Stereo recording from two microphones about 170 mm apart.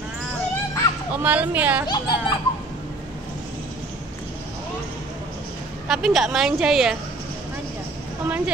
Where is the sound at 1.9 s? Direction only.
25° left (ahead or behind).